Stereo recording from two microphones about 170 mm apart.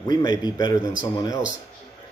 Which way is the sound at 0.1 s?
25° left (ahead or behind).